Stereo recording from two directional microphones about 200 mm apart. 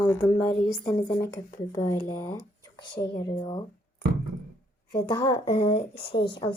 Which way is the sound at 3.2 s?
25° left (ahead or behind).